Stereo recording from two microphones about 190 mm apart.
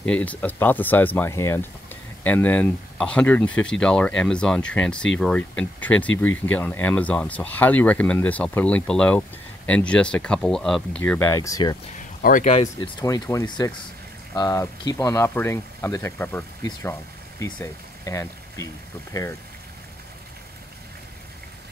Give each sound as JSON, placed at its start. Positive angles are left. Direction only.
{"t": 0.0, "sound": "speech", "side_deg": 5}
{"t": 12.2, "sound": "speech", "side_deg": 45}
{"t": 13.0, "sound": "speech", "side_deg": 15}